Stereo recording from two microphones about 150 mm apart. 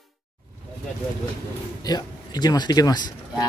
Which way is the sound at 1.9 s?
25° left (ahead or behind).